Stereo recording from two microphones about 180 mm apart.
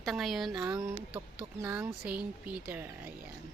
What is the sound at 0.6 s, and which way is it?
Speech, 15° right (ahead or behind).